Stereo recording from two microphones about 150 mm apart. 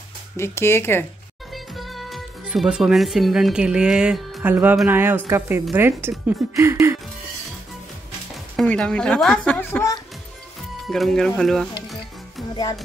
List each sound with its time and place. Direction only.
0.4 s a woman's voice: 15° left (ahead or behind)
1.5 s speech: centre (ahead or behind); by 7.0 s 20° right (ahead or behind)
8.5 s a woman's voice: 5° left (ahead or behind)
10.9 s speech: centre (ahead or behind)